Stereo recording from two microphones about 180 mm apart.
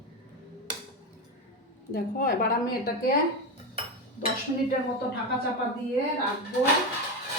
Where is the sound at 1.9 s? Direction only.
50° left (ahead or behind).